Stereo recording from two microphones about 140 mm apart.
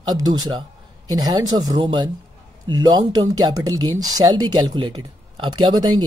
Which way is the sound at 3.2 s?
25° right (ahead or behind).